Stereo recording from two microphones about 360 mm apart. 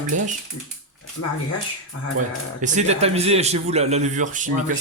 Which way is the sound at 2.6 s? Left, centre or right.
Centre.